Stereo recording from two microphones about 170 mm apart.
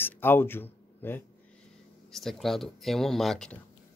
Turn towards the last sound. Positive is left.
turn(degrees=5)  # may be behind; listen again after turning